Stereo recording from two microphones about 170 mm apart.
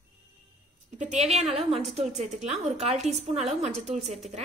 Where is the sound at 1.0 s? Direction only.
40° right (ahead or behind).